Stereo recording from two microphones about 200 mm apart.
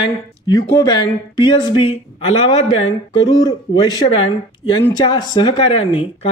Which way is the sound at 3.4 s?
20° left (ahead or behind).